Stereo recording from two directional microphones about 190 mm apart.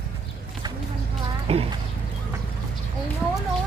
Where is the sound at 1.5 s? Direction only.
35° right (ahead or behind).